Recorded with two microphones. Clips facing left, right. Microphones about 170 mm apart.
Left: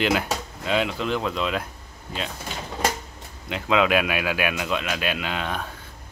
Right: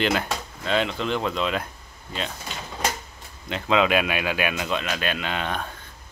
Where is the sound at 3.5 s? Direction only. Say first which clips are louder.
Even; 5° left (ahead or behind).